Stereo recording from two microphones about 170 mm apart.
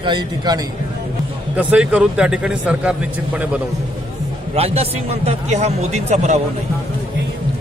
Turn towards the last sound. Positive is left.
turn(degrees=-45)  # may be behind; listen again after turning